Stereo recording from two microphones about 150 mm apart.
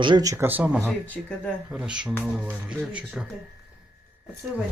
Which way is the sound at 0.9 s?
10° left (ahead or behind).